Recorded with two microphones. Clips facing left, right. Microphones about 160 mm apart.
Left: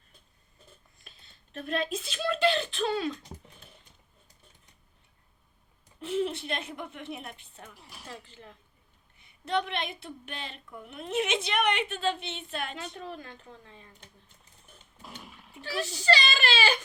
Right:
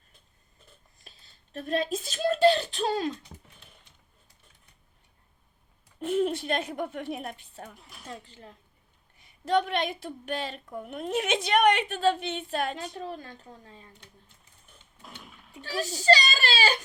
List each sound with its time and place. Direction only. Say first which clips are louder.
1.0 s speech: right 2 dB; 35° right (ahead or behind)
6.0 s a child's voice: right 4 dB; 45° right (ahead or behind)
15.0 s goat: left 2 dB; centre (ahead or behind)
15.6 s a child's voice: right 4 dB; 35° right (ahead or behind)